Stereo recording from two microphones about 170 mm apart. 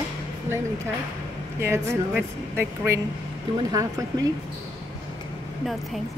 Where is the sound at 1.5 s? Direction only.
15° right (ahead or behind).